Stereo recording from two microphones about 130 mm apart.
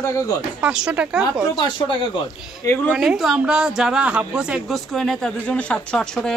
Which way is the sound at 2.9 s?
5° right (ahead or behind).